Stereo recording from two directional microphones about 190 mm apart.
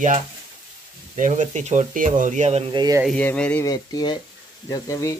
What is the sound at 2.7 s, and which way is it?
Speech, 20° right (ahead or behind).